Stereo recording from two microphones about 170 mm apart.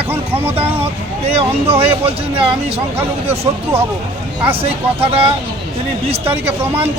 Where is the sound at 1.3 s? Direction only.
35° right (ahead or behind).